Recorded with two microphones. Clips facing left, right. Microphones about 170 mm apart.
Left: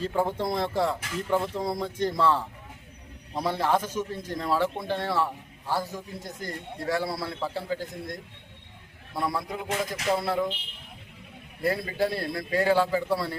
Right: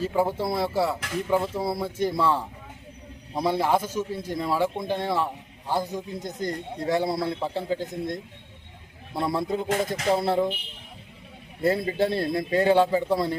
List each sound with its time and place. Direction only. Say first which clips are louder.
0.0 s a man's voice: right 2 dB; 10° right (ahead or behind); by 10.5 s 25° right (ahead or behind)
11.6 s a man's voice: right 3 dB; 25° right (ahead or behind)